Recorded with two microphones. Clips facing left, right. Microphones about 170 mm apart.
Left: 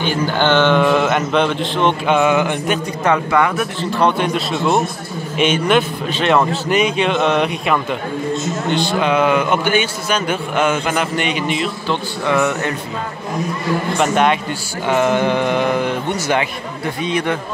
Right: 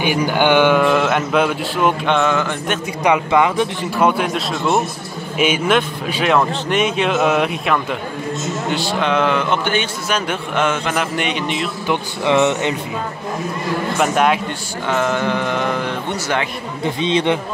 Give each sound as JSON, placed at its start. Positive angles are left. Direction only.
{"t": 0.0, "sound": "speech", "side_deg": -15}
{"t": 0.8, "sound": "a man's voice", "side_deg": 0}
{"t": 2.0, "sound": "a man's voice", "side_deg": 10}
{"t": 3.0, "sound": "speech", "side_deg": -15}
{"t": 4.0, "sound": "a man's voice", "side_deg": 0}
{"t": 11.9, "sound": "speech", "side_deg": -20}
{"t": 13.9, "sound": "a man's voice", "side_deg": -5}
{"t": 14.9, "sound": "a man's voice", "side_deg": 15}
{"t": 16.8, "sound": "speech", "side_deg": -25}